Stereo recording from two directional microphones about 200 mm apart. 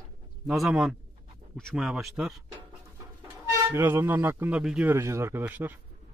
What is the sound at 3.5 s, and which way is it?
Speech, 10° right (ahead or behind).